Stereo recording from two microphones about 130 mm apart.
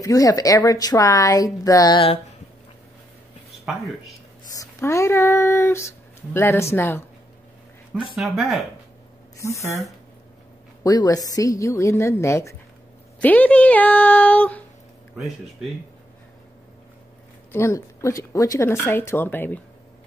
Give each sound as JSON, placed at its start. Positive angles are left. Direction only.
{"t": 0.0, "sound": "speech", "side_deg": 25}
{"t": 3.7, "sound": "speech", "side_deg": -5}
{"t": 4.6, "sound": "speech", "side_deg": 25}
{"t": 8.2, "sound": "speech", "side_deg": 0}
{"t": 10.8, "sound": "speech", "side_deg": 30}
{"t": 13.2, "sound": "speech", "side_deg": 10}
{"t": 17.5, "sound": "speech", "side_deg": 20}